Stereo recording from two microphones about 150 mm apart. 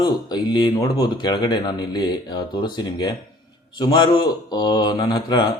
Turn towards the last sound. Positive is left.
turn(degrees=30)  # may be behind; listen again after turning